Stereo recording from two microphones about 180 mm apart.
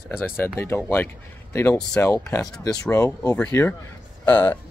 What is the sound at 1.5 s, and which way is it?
Speech, 15° left (ahead or behind).